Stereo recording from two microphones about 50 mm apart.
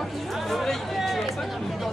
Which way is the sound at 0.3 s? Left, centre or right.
Centre.